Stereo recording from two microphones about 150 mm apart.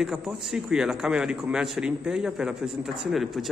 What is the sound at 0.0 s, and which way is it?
A man's voice, 5° right (ahead or behind).